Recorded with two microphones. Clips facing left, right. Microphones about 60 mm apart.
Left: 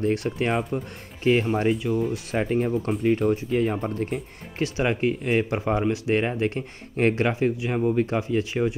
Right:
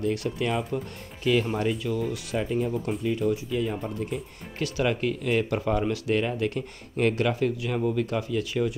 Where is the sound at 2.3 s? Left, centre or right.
Left.